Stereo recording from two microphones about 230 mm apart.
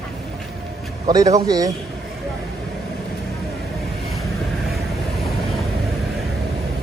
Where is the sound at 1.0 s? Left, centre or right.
Centre.